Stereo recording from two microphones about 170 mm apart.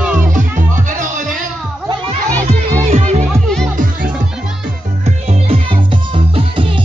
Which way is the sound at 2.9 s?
45° right (ahead or behind).